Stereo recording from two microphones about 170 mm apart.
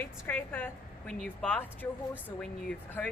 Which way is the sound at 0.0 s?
10° left (ahead or behind).